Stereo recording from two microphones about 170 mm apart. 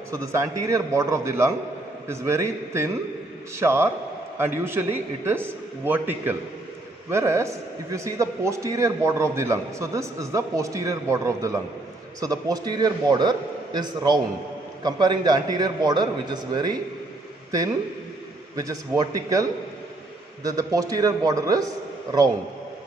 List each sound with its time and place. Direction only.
0.1 s a man's voice: 15° right (ahead or behind)
18.6 s a man's voice: 20° right (ahead or behind)
20.4 s a man's voice: 20° right (ahead or behind)